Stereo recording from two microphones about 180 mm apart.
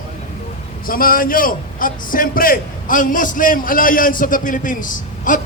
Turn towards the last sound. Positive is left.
turn(degrees=45)  # may be behind; listen again after turning